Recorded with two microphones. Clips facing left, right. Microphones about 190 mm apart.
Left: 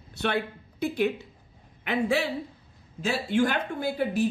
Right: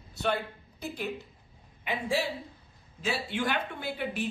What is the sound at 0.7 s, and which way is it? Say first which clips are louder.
A woman's voice: left 9 dB; 70° left (ahead or behind).